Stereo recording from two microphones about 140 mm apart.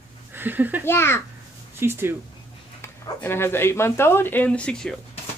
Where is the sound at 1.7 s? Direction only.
15° right (ahead or behind).